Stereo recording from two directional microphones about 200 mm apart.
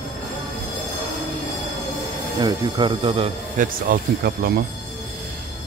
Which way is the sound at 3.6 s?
45° right (ahead or behind).